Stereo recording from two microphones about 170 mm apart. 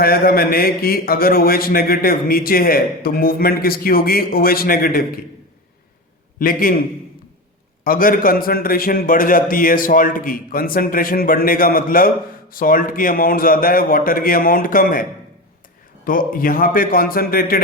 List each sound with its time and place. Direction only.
0.0 s a man's voice: 60° left (ahead or behind)
6.4 s a man's voice: 55° left (ahead or behind)
7.9 s a man's voice: 55° left (ahead or behind)
16.0 s a man's voice: 55° left (ahead or behind)